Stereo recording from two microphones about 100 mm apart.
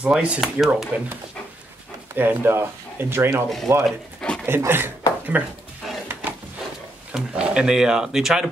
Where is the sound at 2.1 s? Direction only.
20° right (ahead or behind).